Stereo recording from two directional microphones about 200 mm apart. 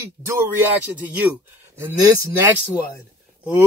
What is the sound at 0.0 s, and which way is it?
Speech, 15° right (ahead or behind).